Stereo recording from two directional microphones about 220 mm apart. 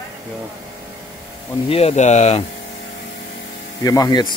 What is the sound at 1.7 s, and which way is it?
Speech, 30° left (ahead or behind).